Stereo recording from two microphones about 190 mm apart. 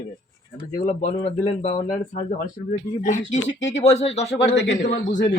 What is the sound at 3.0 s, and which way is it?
Speech, 40° left (ahead or behind).